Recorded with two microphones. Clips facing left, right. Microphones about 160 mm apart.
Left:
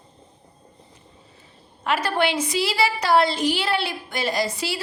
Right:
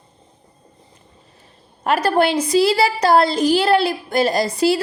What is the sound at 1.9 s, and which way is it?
A woman's voice, 40° right (ahead or behind).